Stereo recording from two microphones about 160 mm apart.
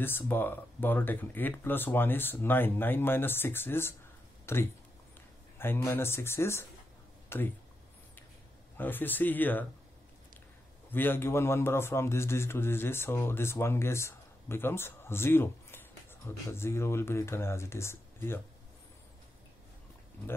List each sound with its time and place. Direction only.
0.0 s a man's voice: 15° left (ahead or behind)
5.9 s a man's voice: 15° left (ahead or behind)
8.7 s a man's voice: 10° left (ahead or behind)
10.9 s a man's voice: 10° left (ahead or behind)